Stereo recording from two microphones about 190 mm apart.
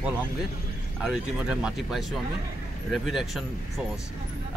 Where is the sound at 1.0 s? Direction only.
5° right (ahead or behind).